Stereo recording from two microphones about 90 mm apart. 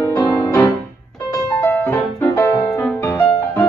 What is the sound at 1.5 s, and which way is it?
Music, 25° left (ahead or behind).